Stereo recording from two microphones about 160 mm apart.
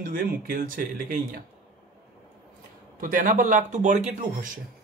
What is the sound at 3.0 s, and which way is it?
Speech, 55° right (ahead or behind).